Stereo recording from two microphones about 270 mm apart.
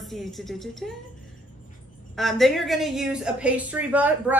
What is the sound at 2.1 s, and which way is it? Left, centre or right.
A woman's voice, centre.